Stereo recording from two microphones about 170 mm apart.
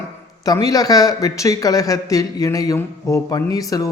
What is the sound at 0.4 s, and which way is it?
Speech, 20° left (ahead or behind).